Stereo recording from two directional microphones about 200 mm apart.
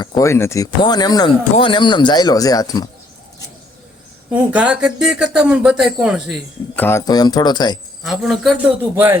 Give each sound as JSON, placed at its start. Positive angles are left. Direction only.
{"t": 0.1, "sound": "speech", "side_deg": 15}
{"t": 4.3, "sound": "speech", "side_deg": -5}
{"t": 6.7, "sound": "speech", "side_deg": 10}
{"t": 8.0, "sound": "speech", "side_deg": 0}